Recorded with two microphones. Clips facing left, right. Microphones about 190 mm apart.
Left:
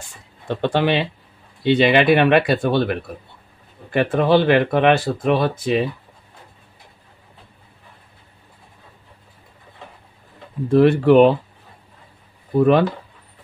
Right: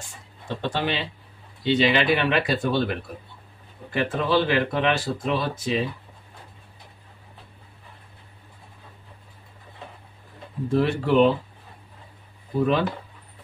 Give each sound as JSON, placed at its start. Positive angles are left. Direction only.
{"t": 0.5, "sound": "speech", "side_deg": 60}
{"t": 10.7, "sound": "speech", "side_deg": 60}
{"t": 12.5, "sound": "speech", "side_deg": 60}